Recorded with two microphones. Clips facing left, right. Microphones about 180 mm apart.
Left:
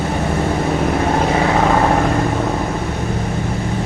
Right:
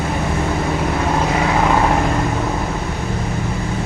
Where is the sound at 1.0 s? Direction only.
40° left (ahead or behind).